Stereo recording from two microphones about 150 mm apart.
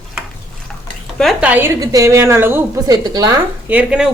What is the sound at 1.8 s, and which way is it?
A woman's voice, 20° right (ahead or behind).